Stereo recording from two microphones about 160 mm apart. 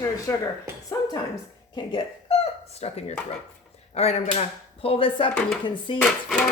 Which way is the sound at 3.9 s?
40° left (ahead or behind).